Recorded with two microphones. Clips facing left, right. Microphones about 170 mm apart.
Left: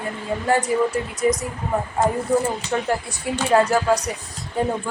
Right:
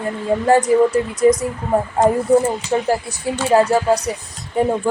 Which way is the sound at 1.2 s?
30° right (ahead or behind).